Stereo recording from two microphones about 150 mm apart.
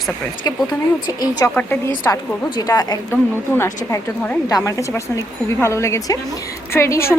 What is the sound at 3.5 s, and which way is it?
A woman's voice, 15° left (ahead or behind).